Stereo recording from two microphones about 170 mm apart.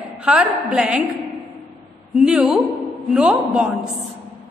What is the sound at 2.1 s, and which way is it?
A man's voice, 5° right (ahead or behind).